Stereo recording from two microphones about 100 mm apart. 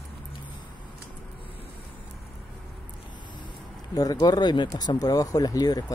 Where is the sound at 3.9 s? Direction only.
40° left (ahead or behind).